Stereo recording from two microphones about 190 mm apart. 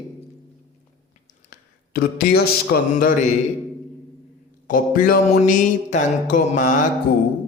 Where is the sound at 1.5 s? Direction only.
50° left (ahead or behind).